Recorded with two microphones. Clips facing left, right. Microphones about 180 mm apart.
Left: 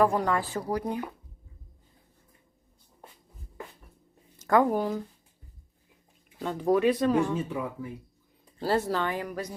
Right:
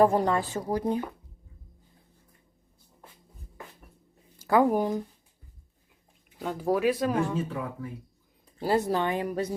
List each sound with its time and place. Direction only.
0.0 s speech: 25° right (ahead or behind)
4.4 s speech: 10° right (ahead or behind)
6.4 s speech: 5° right (ahead or behind)
8.6 s speech: 15° right (ahead or behind)